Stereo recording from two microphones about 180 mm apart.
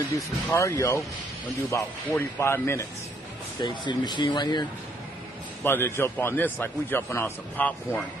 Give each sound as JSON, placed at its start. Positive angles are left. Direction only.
{"t": 0.5, "sound": "a man's voice", "side_deg": 15}
{"t": 3.6, "sound": "speech", "side_deg": 25}
{"t": 5.6, "sound": "a man's voice", "side_deg": 15}